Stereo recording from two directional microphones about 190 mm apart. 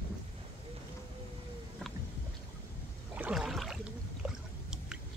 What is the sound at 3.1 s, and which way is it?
Boat, 5° right (ahead or behind).